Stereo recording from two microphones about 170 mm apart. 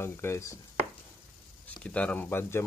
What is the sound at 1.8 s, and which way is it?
Speech, 5° left (ahead or behind).